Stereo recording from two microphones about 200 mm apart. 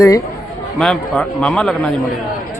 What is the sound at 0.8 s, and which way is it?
A man's voice, centre (ahead or behind).